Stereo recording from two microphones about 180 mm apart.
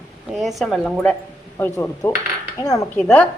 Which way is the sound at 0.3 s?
Centre (ahead or behind).